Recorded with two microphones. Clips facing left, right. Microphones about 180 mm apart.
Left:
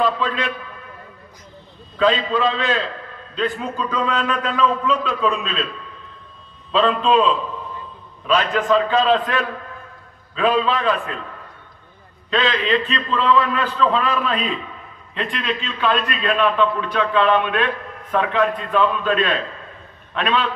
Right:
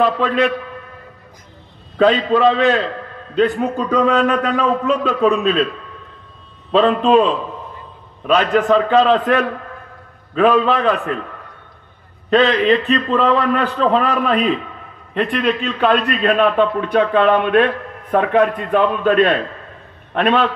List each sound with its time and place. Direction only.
0.0 s a man's voice: 60° right (ahead or behind)
2.0 s a man's voice: 60° right (ahead or behind)
6.7 s a man's voice: 45° right (ahead or behind)
12.3 s a man's voice: 50° right (ahead or behind)